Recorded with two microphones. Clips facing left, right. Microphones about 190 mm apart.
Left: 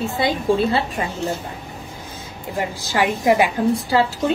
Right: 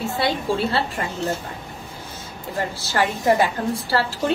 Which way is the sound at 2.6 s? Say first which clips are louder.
Left 2 dB; 15° left (ahead or behind).